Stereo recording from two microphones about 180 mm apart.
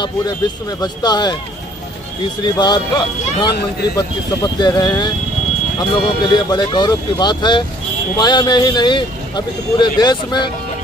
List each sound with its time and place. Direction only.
0.0 s speech: 20° left (ahead or behind)
2.4 s speech: 25° left (ahead or behind)